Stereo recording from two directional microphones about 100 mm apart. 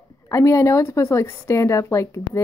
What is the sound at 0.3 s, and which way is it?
A woman's voice, 30° left (ahead or behind).